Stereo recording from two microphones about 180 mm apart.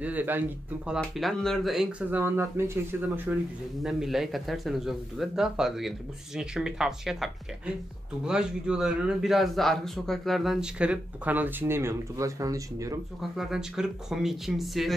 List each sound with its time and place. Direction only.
0.0 s speech: 10° right (ahead or behind)
3.8 s a man's voice: centre (ahead or behind); by 13.0 s 20° right (ahead or behind)
13.2 s a man's voice: centre (ahead or behind)